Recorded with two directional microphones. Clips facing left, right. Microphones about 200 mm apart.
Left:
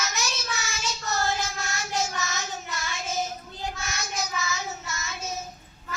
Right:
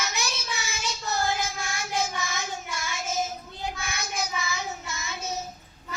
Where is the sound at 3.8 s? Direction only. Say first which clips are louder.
Even; 15° right (ahead or behind).